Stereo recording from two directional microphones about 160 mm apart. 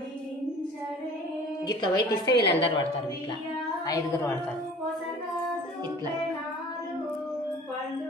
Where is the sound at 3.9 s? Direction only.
20° left (ahead or behind).